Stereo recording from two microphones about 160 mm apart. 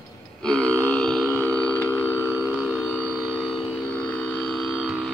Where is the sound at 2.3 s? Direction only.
10° right (ahead or behind).